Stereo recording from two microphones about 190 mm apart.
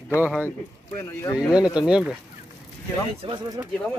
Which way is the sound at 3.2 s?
25° right (ahead or behind).